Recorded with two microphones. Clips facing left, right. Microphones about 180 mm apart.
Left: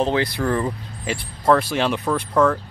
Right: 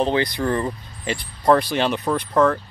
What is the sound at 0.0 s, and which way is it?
Speech, centre (ahead or behind).